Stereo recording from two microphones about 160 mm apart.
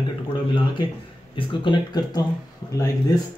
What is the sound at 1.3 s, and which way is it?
Speech, 30° left (ahead or behind).